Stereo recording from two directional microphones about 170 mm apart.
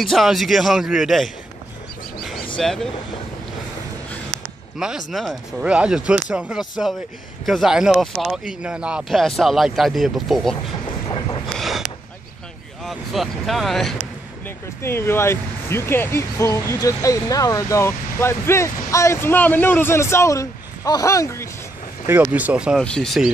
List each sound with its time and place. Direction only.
0.0 s speech: centre (ahead or behind)
2.6 s speech: 5° left (ahead or behind)
4.7 s speech: 5° right (ahead or behind)
10.9 s train: 30° left (ahead or behind)
11.5 s a sound: centre (ahead or behind)
12.8 s speech: centre (ahead or behind)
14.8 s speech: 15° left (ahead or behind)
22.0 s speech: 10° right (ahead or behind)